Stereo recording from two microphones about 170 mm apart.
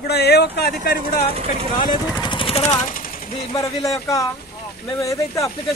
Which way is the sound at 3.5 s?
20° left (ahead or behind).